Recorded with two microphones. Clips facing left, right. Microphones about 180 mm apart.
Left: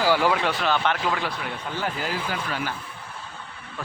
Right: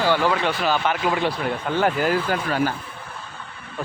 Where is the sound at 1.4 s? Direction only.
60° right (ahead or behind).